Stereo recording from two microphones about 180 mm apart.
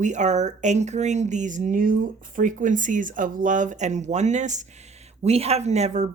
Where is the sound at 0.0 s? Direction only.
40° right (ahead or behind).